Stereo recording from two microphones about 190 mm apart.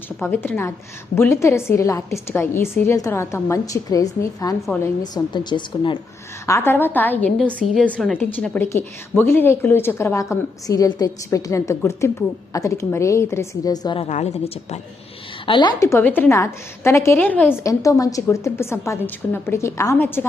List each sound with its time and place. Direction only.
0.2 s a woman's voice: 10° left (ahead or behind)
6.4 s a woman's voice: 15° left (ahead or behind); by 14.8 s 35° left (ahead or behind)
15.4 s a woman's voice: 25° left (ahead or behind)